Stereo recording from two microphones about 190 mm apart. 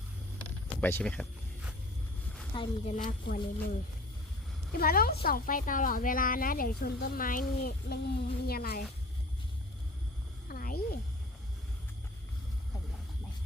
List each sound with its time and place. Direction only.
0.8 s speech: 10° left (ahead or behind)
2.6 s a woman's voice: 30° left (ahead or behind)
3.0 s a woman's voice: 45° left (ahead or behind)
4.8 s a woman's voice: 50° left (ahead or behind)
10.5 s a sound: 50° left (ahead or behind)